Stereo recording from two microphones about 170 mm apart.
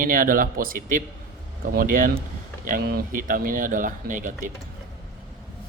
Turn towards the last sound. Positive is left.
turn(degrees=-50)  # may be behind; listen again after turning